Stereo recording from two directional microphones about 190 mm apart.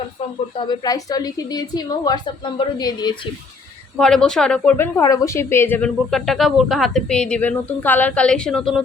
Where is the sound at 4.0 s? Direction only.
Centre (ahead or behind).